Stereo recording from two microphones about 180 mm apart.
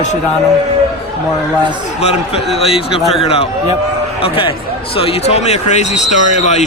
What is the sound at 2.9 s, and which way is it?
Speech, centre (ahead or behind).